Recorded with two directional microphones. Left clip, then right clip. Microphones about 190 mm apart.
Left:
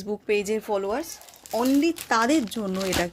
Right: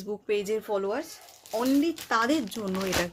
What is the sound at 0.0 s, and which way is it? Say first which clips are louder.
Speech: left 4 dB; 30° left (ahead or behind).